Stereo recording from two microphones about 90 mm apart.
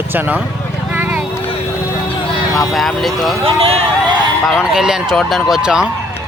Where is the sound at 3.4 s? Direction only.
90° right.